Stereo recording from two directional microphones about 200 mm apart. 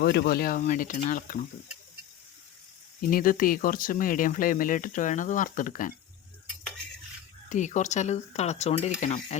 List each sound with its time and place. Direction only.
0.0 s speech: 50° left (ahead or behind)
3.1 s speech: 45° left (ahead or behind)
7.5 s speech: 35° left (ahead or behind)